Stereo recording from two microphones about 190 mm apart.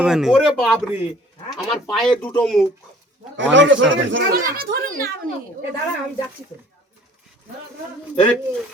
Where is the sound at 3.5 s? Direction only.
80° right.